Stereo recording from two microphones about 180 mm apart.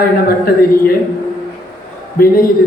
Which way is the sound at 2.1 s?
55° left (ahead or behind).